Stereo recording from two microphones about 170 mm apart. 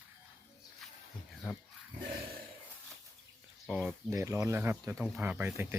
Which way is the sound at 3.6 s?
Centre (ahead or behind).